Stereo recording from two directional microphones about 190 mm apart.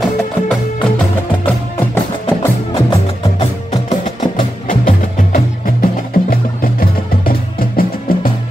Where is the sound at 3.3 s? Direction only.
35° left (ahead or behind).